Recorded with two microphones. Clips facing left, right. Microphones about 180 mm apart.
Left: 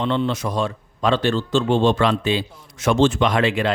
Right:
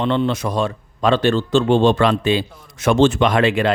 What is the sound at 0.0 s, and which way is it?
A man's voice, 60° right (ahead or behind).